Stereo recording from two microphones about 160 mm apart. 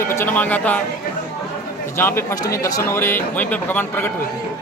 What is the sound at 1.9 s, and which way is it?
A man's voice, 15° left (ahead or behind).